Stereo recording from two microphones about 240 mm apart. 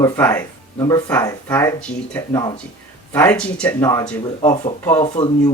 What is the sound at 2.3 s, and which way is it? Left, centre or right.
Speech, centre.